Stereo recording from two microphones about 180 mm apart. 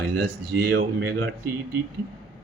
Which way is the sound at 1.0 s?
80° right.